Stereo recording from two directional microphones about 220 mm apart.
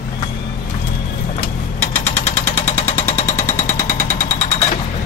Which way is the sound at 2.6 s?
30° left (ahead or behind).